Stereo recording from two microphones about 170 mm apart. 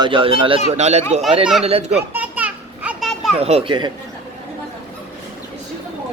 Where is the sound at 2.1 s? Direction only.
10° right (ahead or behind).